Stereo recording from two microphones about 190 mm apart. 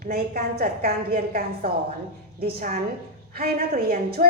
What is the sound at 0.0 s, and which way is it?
A woman's voice, 55° right (ahead or behind).